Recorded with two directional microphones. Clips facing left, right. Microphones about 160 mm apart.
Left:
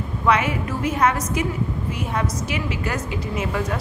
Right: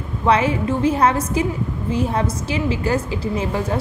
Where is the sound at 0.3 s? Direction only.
30° right (ahead or behind).